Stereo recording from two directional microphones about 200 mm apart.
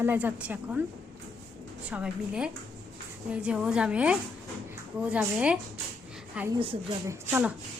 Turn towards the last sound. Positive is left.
turn(degrees=-10)  # may be behind; listen again after turning